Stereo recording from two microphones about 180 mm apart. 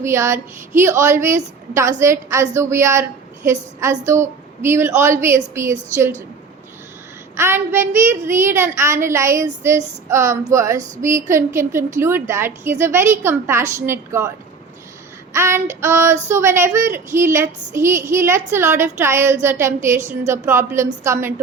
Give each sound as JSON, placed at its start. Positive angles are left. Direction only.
{"t": 0.0, "sound": "a woman's voice", "side_deg": -15}
{"t": 7.3, "sound": "a woman's voice", "side_deg": -15}
{"t": 15.3, "sound": "child singing", "side_deg": -15}
{"t": 15.8, "sound": "a woman's voice", "side_deg": -15}